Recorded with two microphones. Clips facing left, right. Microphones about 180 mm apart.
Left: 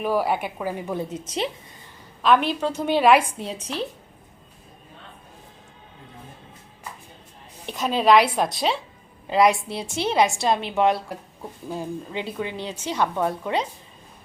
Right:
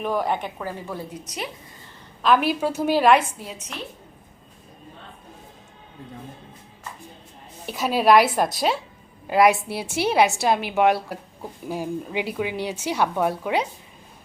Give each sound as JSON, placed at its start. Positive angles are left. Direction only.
{"t": 0.0, "sound": "a woman's voice", "side_deg": 5}
{"t": 2.2, "sound": "a woman's voice", "side_deg": -5}
{"t": 3.3, "sound": "a woman's voice", "side_deg": 30}
{"t": 7.7, "sound": "a woman's voice", "side_deg": -5}